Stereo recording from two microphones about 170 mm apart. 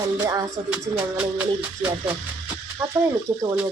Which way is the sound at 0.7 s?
10° right (ahead or behind).